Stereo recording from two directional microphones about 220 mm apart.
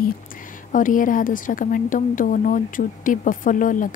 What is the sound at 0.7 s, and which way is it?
A woman's voice, 35° left (ahead or behind).